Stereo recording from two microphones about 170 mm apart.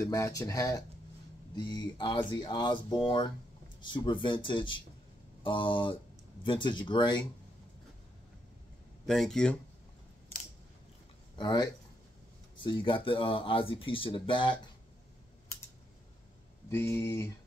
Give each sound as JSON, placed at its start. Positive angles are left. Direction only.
{"t": 0.0, "sound": "speech", "side_deg": 20}
{"t": 9.0, "sound": "speech", "side_deg": 0}
{"t": 11.3, "sound": "speech", "side_deg": 25}
{"t": 16.6, "sound": "speech", "side_deg": 15}